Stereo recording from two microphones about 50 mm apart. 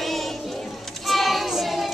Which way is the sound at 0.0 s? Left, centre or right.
Centre.